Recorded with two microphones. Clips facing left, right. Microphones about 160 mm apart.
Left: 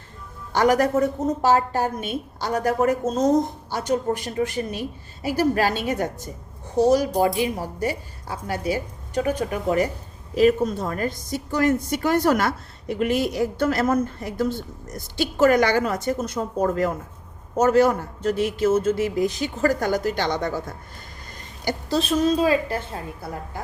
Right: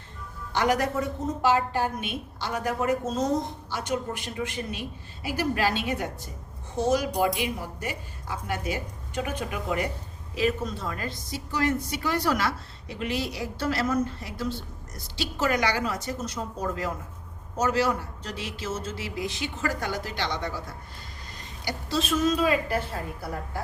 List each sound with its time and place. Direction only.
0.5 s a woman's voice: 45° left (ahead or behind); by 23.3 s 25° left (ahead or behind)